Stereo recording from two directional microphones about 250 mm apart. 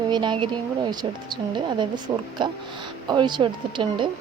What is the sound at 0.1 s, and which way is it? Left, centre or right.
A woman's voice, centre.